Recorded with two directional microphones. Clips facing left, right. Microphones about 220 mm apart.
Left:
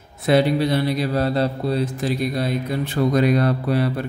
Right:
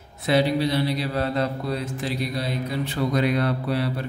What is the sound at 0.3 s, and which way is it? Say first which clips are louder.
Mantra: left 4 dB; 50° left (ahead or behind).